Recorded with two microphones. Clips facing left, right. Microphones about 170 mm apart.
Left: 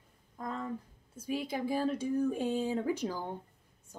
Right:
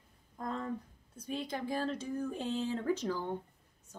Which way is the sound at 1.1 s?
5° left (ahead or behind).